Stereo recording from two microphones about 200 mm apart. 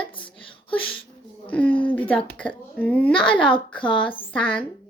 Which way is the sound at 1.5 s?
5° left (ahead or behind).